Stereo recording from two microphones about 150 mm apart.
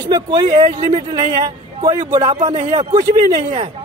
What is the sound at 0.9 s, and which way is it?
A man's voice, 30° right (ahead or behind).